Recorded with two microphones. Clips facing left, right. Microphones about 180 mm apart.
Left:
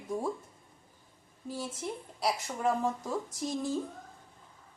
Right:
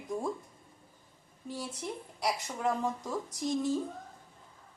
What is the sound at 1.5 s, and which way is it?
Speech, 25° left (ahead or behind).